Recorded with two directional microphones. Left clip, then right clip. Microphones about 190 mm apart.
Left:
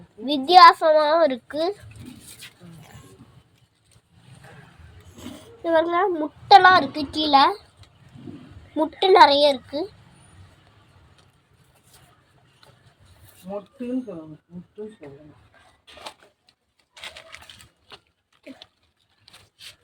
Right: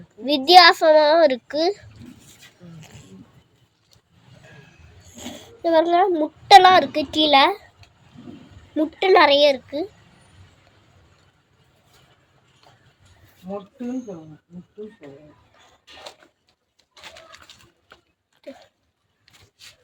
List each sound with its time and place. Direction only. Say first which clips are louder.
0.3 s a child's voice: even; 25° right (ahead or behind)
5.1 s a woman's voice: right 4 dB; 20° right (ahead or behind)
8.7 s a child's voice: right 1 dB; 15° right (ahead or behind)
16.9 s a sound: left 3 dB; 40° left (ahead or behind)